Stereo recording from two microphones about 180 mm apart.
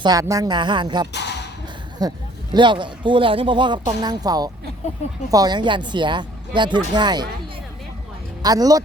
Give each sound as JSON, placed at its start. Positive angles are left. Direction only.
{"t": 0.0, "sound": "speech", "side_deg": -20}
{"t": 1.1, "sound": "a sound", "side_deg": 70}
{"t": 2.0, "sound": "speech", "side_deg": -20}
{"t": 8.4, "sound": "speech", "side_deg": -20}